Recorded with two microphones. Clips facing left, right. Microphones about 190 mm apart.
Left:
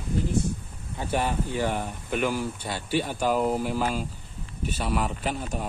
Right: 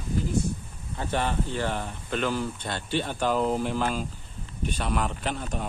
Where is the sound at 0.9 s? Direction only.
10° left (ahead or behind).